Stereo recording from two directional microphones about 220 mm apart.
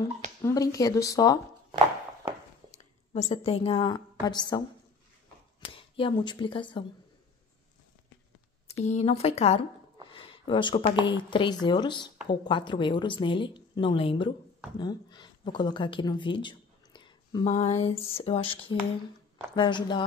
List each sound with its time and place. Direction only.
0.4 s speech: 15° left (ahead or behind)
2.7 s a woman's voice: 30° left (ahead or behind)
5.7 s speech: 25° left (ahead or behind)
8.8 s a woman's voice: 30° left (ahead or behind)